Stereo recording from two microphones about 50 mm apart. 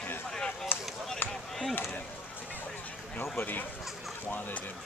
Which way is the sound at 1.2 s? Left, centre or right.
Left.